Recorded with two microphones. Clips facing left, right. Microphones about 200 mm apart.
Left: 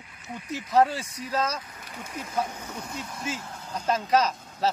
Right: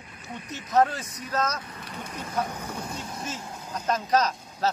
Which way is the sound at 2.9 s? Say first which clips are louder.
Left 1 dB; 30° right (ahead or behind).